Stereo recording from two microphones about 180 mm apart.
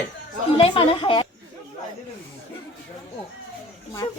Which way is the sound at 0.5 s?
30° left (ahead or behind).